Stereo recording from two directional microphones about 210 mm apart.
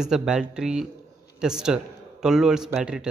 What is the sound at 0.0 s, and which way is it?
A man's voice, 5° right (ahead or behind).